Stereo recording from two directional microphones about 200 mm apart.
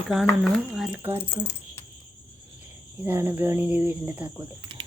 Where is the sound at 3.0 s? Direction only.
10° right (ahead or behind).